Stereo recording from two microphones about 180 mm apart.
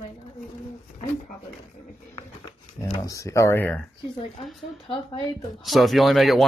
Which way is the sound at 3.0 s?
15° left (ahead or behind).